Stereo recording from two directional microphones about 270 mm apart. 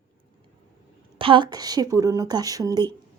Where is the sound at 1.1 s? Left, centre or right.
Centre.